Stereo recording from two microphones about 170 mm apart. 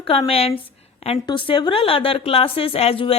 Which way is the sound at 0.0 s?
35° left (ahead or behind).